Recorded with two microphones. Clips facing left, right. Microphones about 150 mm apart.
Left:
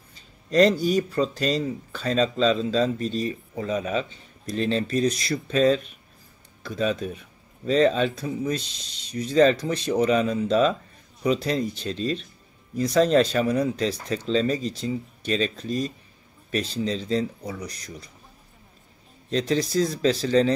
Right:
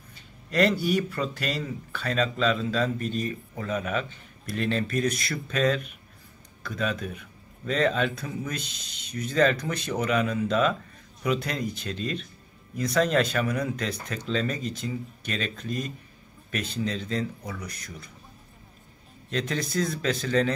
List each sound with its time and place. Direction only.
0.5 s speech: 30° left (ahead or behind)
19.2 s speech: 30° left (ahead or behind)